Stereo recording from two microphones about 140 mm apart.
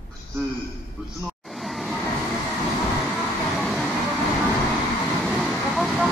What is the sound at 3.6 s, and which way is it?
Vehicle, centre (ahead or behind).